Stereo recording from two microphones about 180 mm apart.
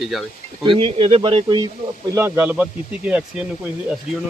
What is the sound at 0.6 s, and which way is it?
Speech, 30° right (ahead or behind).